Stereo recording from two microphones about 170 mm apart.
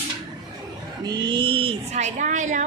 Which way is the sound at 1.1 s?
25° right (ahead or behind).